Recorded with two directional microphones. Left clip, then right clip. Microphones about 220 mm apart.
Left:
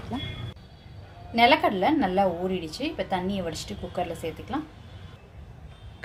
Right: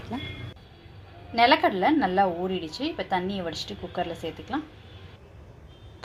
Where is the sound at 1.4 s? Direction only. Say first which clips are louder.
Even; 10° right (ahead or behind).